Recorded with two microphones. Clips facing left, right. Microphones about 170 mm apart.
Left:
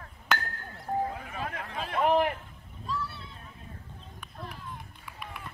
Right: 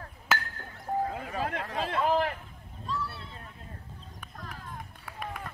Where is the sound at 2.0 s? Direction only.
15° left (ahead or behind).